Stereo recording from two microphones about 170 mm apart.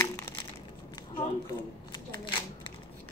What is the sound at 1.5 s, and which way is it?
Shuffling cards, 30° left (ahead or behind).